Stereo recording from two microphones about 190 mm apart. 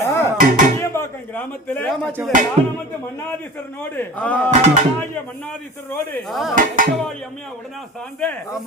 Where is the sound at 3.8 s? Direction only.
10° left (ahead or behind).